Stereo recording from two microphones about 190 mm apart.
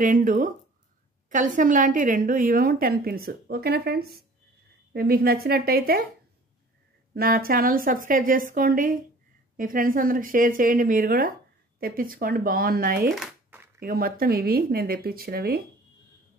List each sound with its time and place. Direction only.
0.0 s a woman's voice: 45° right (ahead or behind)
7.2 s a woman's voice: 50° right (ahead or behind)
13.1 s a sound: 5° right (ahead or behind)
13.7 s a woman's voice: 50° right (ahead or behind)